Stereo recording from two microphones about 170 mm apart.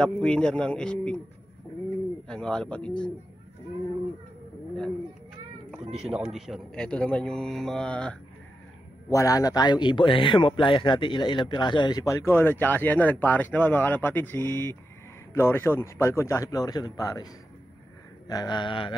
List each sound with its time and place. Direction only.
0.0 s a man's voice: 5° left (ahead or behind)
2.2 s a man's voice: 5° left (ahead or behind)
5.9 s a man's voice: 5° right (ahead or behind)
9.1 s a man's voice: 20° left (ahead or behind)